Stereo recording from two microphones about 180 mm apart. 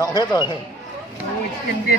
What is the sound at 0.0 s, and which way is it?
Speech, 20° left (ahead or behind).